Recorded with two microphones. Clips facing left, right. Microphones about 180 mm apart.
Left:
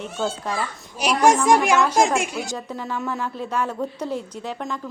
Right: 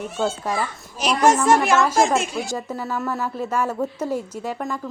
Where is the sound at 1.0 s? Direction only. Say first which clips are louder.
Even; 10° left (ahead or behind).